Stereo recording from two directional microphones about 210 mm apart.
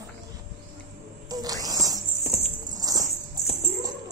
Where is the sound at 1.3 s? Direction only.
15° right (ahead or behind).